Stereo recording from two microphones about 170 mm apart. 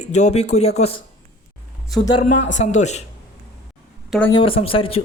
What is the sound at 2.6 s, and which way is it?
Speech, 45° left (ahead or behind).